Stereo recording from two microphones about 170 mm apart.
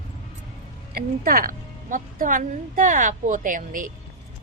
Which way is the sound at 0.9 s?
60° right (ahead or behind).